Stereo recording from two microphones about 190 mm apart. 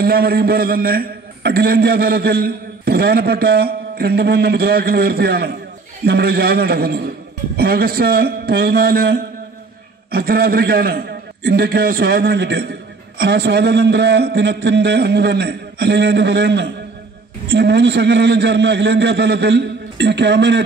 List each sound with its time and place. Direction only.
0.0 s a man's voice: 50° right (ahead or behind)